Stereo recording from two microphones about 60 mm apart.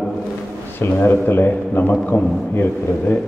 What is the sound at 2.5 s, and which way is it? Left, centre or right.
Speech, left.